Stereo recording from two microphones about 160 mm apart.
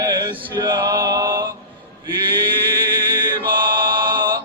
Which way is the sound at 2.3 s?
30° right (ahead or behind).